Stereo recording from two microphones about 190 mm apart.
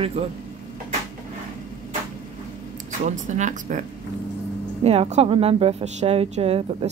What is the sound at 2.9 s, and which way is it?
Speech, 40° right (ahead or behind).